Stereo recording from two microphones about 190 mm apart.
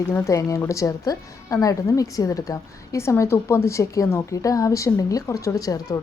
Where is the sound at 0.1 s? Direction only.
15° left (ahead or behind).